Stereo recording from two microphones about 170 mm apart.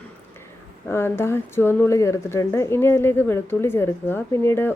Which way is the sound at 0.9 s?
15° left (ahead or behind).